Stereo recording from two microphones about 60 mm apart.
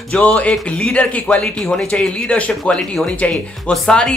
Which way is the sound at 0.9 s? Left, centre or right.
Left.